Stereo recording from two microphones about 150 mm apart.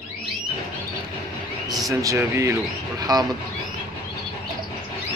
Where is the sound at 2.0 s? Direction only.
20° right (ahead or behind).